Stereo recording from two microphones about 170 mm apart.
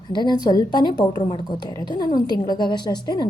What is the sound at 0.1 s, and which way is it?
Speech, 25° left (ahead or behind).